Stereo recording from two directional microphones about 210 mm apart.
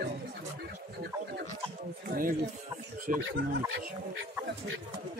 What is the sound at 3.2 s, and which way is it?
Speech, 65° right (ahead or behind).